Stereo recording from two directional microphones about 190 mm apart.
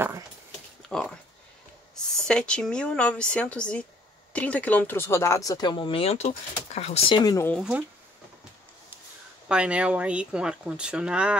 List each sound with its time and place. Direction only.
0.8 s a sound: centre (ahead or behind)
2.2 s speech: 5° left (ahead or behind)
7.5 s speech: 5° right (ahead or behind)
9.5 s speech: 5° right (ahead or behind)